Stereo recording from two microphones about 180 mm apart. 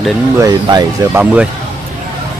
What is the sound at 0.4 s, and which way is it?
Speech, 25° right (ahead or behind).